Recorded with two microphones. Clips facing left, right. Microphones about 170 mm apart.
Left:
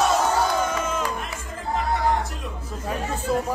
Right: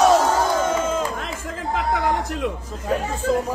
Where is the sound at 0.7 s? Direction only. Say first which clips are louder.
Right 4 dB; 30° right (ahead or behind).